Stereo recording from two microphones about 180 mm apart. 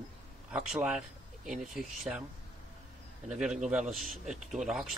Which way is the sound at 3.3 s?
5° right (ahead or behind).